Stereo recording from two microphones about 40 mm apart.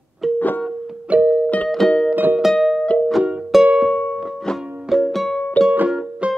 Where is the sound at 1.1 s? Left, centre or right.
Right.